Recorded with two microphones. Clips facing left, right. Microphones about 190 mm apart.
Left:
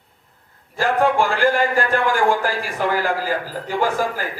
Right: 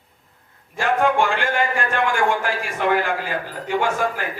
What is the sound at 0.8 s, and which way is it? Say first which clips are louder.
A man's voice: left 1 dB; 35° left (ahead or behind).